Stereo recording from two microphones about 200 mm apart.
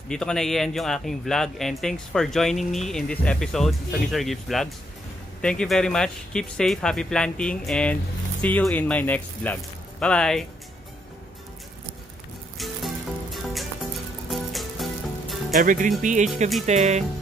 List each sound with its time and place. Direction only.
0.1 s speech: 5° left (ahead or behind)
12.5 s music: centre (ahead or behind)
15.5 s speech: 40° right (ahead or behind)